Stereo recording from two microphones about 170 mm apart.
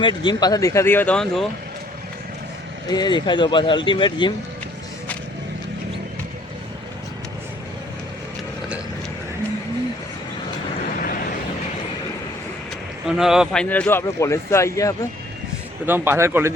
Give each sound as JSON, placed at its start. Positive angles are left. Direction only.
{"t": 0.0, "sound": "speech", "side_deg": 25}
{"t": 2.9, "sound": "speech", "side_deg": 25}
{"t": 13.1, "sound": "speech", "side_deg": -5}
{"t": 15.9, "sound": "a man's voice", "side_deg": -15}